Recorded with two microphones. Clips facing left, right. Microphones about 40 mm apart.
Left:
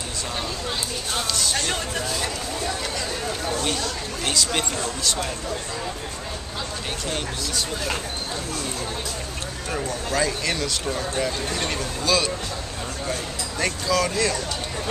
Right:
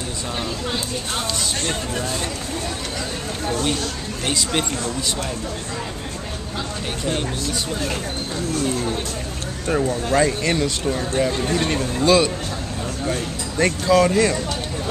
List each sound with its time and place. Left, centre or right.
4.3 s speech: centre
10.0 s speech: right
10.9 s speech: centre
13.8 s speech: right